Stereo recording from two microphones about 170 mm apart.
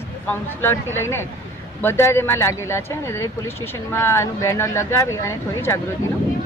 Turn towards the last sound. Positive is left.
turn(degrees=15)  # may be behind; listen again after turning